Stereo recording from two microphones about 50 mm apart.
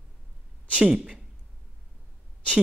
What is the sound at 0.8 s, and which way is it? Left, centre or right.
Speech, centre.